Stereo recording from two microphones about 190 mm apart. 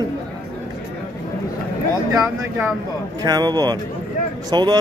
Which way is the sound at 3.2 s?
20° right (ahead or behind).